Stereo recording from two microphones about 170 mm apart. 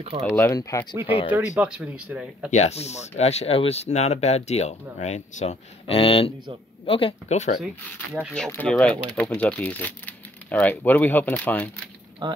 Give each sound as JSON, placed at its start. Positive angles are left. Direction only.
{"t": 0.3, "sound": "speech", "side_deg": 15}
{"t": 1.0, "sound": "speech", "side_deg": 30}
{"t": 1.3, "sound": "speech", "side_deg": -5}
{"t": 2.5, "sound": "speech", "side_deg": 40}
{"t": 7.6, "sound": "speech", "side_deg": -5}
{"t": 8.5, "sound": "speech", "side_deg": 10}
{"t": 12.2, "sound": "speech", "side_deg": -25}